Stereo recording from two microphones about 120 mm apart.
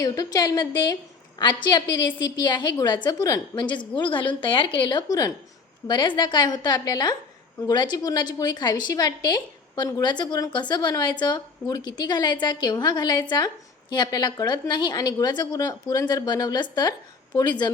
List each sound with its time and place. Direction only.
0.0 s a woman's voice: 30° left (ahead or behind)